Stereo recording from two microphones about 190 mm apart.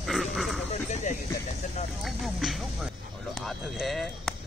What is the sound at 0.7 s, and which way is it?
Speech, 40° left (ahead or behind).